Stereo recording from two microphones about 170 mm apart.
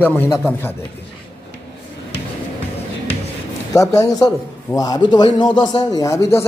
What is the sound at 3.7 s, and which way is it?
A man's voice, 20° left (ahead or behind).